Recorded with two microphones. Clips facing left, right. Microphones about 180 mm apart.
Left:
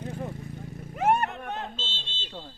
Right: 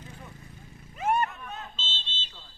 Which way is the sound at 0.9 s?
70° left (ahead or behind).